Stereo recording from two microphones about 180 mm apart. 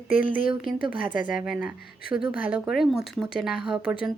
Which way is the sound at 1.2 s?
5° right (ahead or behind).